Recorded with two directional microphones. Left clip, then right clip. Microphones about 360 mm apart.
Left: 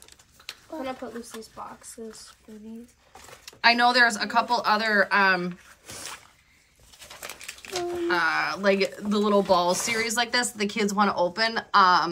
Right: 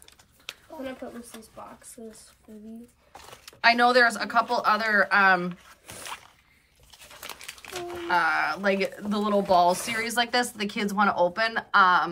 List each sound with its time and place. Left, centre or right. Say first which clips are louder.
3.4 s speech: even; centre
8.1 s speech: right 2 dB; centre